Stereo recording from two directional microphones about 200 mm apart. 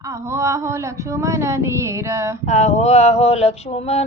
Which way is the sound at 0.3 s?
15° right (ahead or behind).